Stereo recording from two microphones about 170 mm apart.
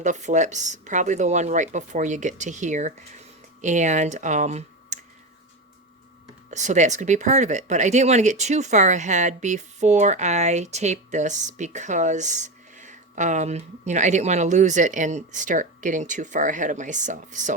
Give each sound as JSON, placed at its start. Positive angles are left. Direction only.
{"t": 0.0, "sound": "speech", "side_deg": -45}
{"t": 6.5, "sound": "speech", "side_deg": -45}